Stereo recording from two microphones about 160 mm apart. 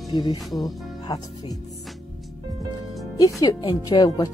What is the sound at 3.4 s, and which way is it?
Speech, 25° left (ahead or behind).